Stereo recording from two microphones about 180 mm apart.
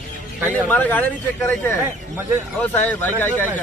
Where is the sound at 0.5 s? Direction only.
10° left (ahead or behind).